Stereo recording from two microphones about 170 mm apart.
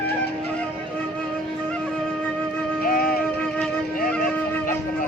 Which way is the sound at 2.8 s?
60° left (ahead or behind).